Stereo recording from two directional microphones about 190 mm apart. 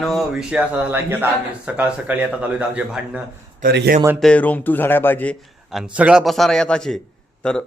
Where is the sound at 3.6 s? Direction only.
55° right (ahead or behind).